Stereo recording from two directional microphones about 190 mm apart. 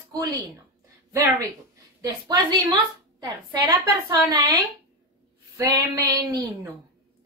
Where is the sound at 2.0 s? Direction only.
20° right (ahead or behind).